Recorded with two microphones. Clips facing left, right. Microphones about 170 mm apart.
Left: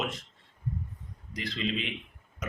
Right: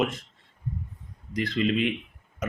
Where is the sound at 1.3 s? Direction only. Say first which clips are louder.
Right 9 dB; 50° right (ahead or behind).